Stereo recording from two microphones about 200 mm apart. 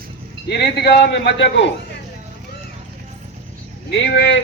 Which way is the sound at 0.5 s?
50° left (ahead or behind).